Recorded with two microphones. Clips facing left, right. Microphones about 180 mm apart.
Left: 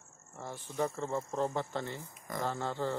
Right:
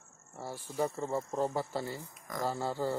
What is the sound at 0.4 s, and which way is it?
Speech, 10° right (ahead or behind).